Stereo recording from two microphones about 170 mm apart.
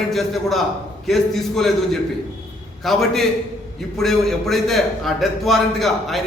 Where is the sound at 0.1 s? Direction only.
Centre (ahead or behind).